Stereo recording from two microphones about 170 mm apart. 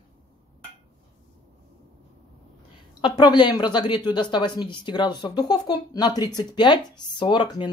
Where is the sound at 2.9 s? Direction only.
25° left (ahead or behind).